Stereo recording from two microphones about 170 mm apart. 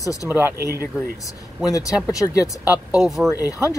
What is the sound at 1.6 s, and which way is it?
Speech, 20° left (ahead or behind).